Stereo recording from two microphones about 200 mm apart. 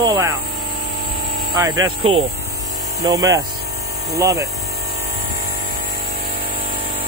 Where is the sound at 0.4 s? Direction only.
50° right (ahead or behind).